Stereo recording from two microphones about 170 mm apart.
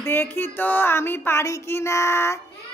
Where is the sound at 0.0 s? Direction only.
15° left (ahead or behind).